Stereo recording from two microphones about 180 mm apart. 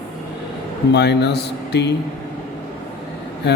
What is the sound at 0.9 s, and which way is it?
Speech, 65° left (ahead or behind).